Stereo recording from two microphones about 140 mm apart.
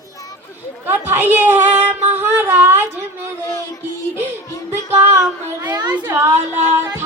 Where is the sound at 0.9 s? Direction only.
15° right (ahead or behind).